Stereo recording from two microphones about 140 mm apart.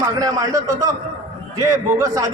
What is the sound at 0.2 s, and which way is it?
A man's voice, 25° right (ahead or behind).